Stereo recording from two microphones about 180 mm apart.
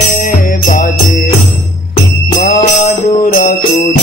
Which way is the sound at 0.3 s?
45° left (ahead or behind).